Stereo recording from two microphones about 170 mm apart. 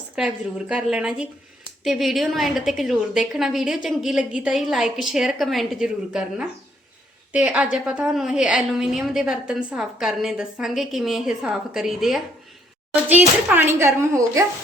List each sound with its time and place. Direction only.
0.2 s a woman's voice: 5° right (ahead or behind)